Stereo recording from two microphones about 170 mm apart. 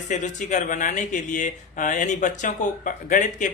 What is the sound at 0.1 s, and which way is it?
Speech, 45° left (ahead or behind).